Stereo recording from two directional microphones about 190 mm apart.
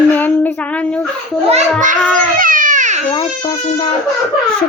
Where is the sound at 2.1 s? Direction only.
45° right (ahead or behind).